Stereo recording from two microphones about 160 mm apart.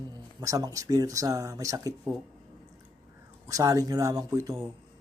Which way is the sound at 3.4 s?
20° right (ahead or behind).